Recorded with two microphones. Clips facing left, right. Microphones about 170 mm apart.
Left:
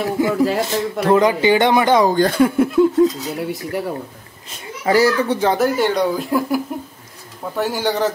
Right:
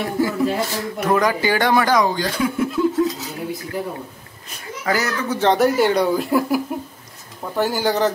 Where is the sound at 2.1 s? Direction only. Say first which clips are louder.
Left 7 dB; 55° left (ahead or behind).